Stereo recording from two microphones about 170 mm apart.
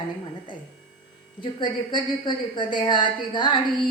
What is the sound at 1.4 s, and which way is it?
A woman's voice, 25° left (ahead or behind).